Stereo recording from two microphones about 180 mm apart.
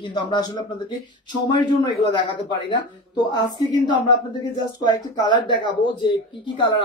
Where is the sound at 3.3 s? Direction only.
25° left (ahead or behind).